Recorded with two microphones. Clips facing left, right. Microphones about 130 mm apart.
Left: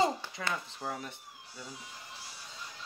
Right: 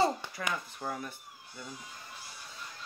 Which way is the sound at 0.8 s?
30° left (ahead or behind).